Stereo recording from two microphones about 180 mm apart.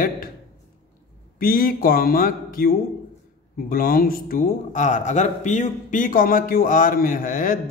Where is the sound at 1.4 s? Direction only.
55° left (ahead or behind).